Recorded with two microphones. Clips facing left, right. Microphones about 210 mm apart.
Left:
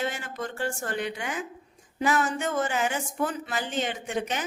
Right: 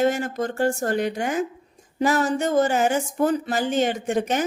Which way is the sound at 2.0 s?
40° right (ahead or behind).